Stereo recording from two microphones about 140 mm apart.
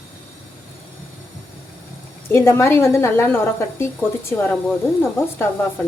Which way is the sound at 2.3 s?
15° left (ahead or behind).